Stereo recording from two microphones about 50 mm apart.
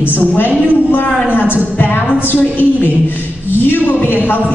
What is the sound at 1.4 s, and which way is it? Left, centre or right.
Speech, right.